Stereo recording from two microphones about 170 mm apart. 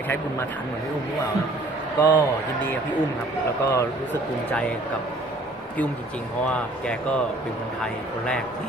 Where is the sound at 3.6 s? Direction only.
20° left (ahead or behind).